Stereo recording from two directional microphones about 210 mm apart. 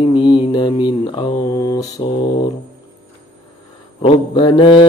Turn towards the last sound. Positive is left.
turn(degrees=25)  # may be behind; listen again after turning